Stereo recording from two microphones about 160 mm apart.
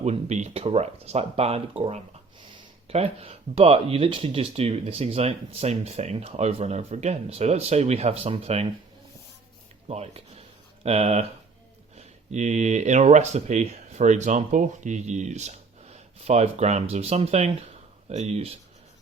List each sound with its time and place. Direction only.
0.0 s speech: 45° right (ahead or behind)
9.9 s speech: 40° right (ahead or behind)